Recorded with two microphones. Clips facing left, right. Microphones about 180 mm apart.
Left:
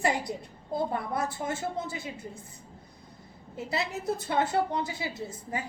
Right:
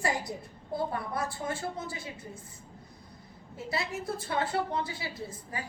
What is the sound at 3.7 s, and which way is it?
A woman's voice, 20° left (ahead or behind).